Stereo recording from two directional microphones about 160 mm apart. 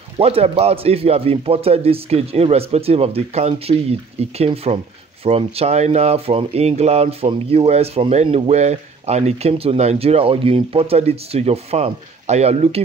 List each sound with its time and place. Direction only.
0.2 s speech: 40° right (ahead or behind)